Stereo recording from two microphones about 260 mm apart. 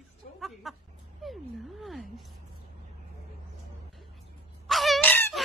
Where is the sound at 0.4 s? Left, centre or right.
Centre.